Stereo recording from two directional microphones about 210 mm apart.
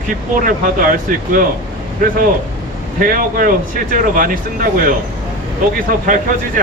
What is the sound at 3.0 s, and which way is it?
Speech, 40° right (ahead or behind).